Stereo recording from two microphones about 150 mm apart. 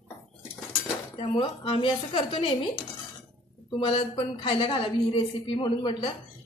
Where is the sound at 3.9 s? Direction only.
35° left (ahead or behind).